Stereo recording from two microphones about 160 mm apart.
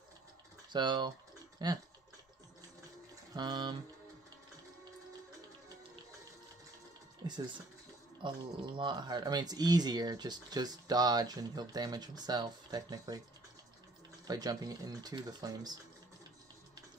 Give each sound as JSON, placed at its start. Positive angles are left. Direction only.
{"t": 0.7, "sound": "speech", "side_deg": -30}
{"t": 3.3, "sound": "speech", "side_deg": -25}
{"t": 7.2, "sound": "speech", "side_deg": -25}
{"t": 14.2, "sound": "speech", "side_deg": -25}